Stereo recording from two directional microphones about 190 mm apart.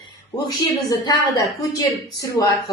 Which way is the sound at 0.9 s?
20° left (ahead or behind).